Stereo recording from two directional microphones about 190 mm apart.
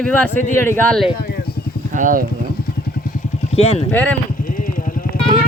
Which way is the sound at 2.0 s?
45° right (ahead or behind).